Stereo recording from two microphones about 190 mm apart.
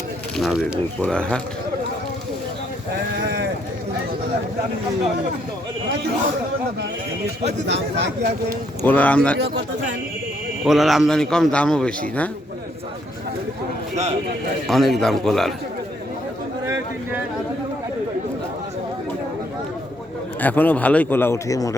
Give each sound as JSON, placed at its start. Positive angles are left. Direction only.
{"t": 0.3, "sound": "a man's voice", "side_deg": 0}
{"t": 7.7, "sound": "speech", "side_deg": -65}
{"t": 8.8, "sound": "a man's voice", "side_deg": 10}
{"t": 9.4, "sound": "speech", "side_deg": -65}
{"t": 10.6, "sound": "a man's voice", "side_deg": 0}
{"t": 13.9, "sound": "speech", "side_deg": -35}
{"t": 14.7, "sound": "a man's voice", "side_deg": 0}
{"t": 20.4, "sound": "a man's voice", "side_deg": 10}